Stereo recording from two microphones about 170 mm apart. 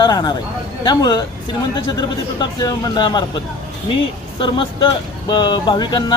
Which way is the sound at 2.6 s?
25° left (ahead or behind).